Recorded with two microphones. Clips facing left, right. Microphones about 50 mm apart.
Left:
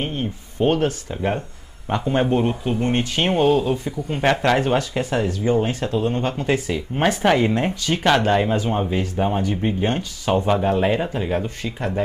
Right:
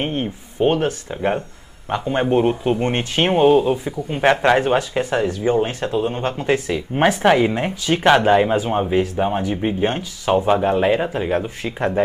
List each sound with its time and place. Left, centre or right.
0.0 s speech: right
0.6 s speech: centre
2.6 s speech: right
3.3 s speech: centre